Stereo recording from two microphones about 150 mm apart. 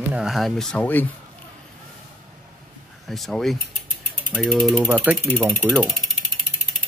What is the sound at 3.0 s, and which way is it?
Speech, centre (ahead or behind).